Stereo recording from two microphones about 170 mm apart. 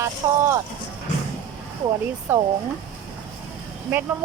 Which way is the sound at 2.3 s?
15° right (ahead or behind).